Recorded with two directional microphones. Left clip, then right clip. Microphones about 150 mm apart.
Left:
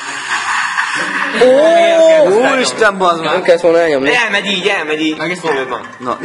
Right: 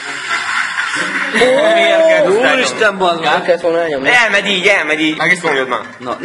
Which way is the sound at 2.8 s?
35° left (ahead or behind).